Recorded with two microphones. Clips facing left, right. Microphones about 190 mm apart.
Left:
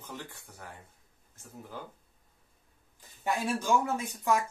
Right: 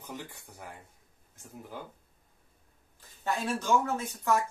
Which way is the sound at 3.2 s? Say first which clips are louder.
Left 1 dB; 15° left (ahead or behind).